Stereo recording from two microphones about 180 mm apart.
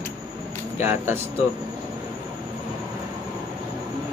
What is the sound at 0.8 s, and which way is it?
Speech, 10° right (ahead or behind).